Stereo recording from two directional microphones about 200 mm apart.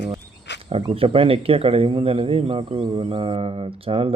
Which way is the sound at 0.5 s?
60° left (ahead or behind).